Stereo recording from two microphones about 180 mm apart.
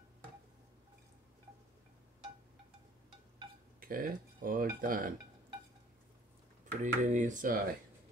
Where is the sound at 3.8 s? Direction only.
50° right (ahead or behind).